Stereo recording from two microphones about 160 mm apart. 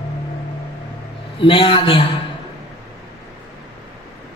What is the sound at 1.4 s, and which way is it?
Speech, 35° left (ahead or behind).